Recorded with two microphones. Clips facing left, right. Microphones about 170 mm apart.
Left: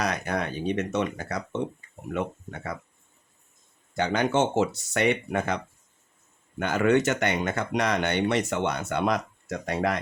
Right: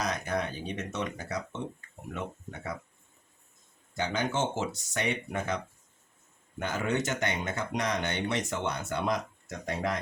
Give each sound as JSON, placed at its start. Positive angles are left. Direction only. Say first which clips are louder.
{"t": 0.0, "sound": "speech", "louder": "left 3 dB", "side_deg": 65}
{"t": 3.9, "sound": "speech", "louder": "left 7 dB", "side_deg": 65}
{"t": 6.6, "sound": "speech", "louder": "left 8 dB", "side_deg": 75}